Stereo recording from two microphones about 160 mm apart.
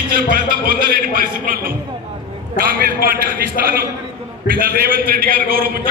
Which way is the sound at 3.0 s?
65° right (ahead or behind).